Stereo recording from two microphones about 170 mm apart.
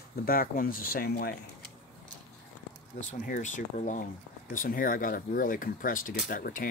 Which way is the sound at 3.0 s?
45° left (ahead or behind).